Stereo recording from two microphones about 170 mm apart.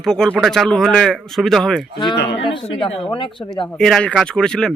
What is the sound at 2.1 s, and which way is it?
Speech, 90° left.